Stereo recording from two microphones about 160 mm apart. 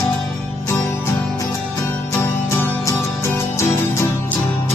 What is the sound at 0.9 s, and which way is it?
Music, 20° left (ahead or behind).